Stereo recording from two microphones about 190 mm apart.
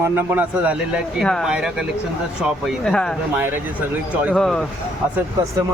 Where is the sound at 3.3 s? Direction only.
10° right (ahead or behind).